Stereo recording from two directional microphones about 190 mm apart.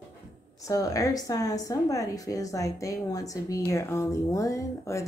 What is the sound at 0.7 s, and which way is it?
Speech, 20° left (ahead or behind).